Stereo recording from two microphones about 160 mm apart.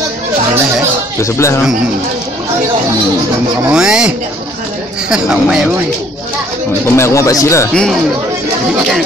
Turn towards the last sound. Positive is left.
turn(degrees=5)  # may be behind; listen again after turning